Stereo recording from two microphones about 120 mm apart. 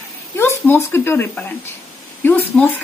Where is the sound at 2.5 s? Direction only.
Centre (ahead or behind).